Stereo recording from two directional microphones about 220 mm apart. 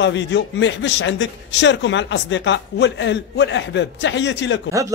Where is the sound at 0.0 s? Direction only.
55° left (ahead or behind).